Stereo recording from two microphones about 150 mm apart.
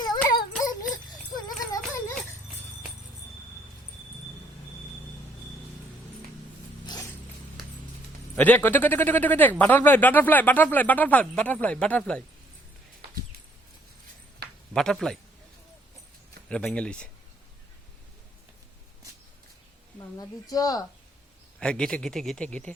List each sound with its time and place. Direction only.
0.3 s a sound: 25° left (ahead or behind)
6.8 s a sound: 25° left (ahead or behind)
8.4 s a man's voice: 10° left (ahead or behind)
14.7 s speech: 5° left (ahead or behind)
16.5 s a man's voice: 5° left (ahead or behind)
20.0 s a woman's voice: 25° left (ahead or behind)
21.6 s speech: 5° left (ahead or behind)